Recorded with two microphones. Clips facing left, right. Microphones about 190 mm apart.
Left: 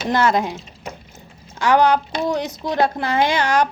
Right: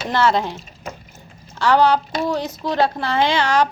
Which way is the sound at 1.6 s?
15° left (ahead or behind).